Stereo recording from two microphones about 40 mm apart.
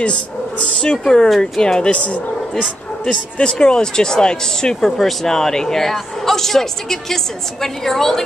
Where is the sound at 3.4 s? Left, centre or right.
Left.